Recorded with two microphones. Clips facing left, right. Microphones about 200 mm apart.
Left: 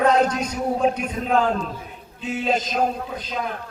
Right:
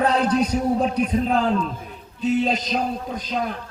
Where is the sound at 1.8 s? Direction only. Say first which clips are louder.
Right 5 dB; 40° right (ahead or behind).